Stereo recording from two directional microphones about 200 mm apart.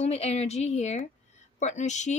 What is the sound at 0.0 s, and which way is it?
Speech, 30° left (ahead or behind).